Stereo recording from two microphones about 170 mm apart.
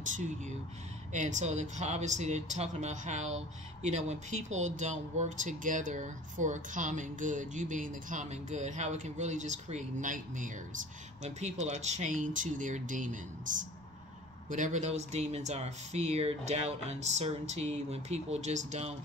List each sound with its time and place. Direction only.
0.0 s speech: 45° right (ahead or behind)